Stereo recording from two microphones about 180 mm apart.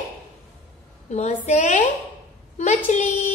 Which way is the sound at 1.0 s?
40° left (ahead or behind).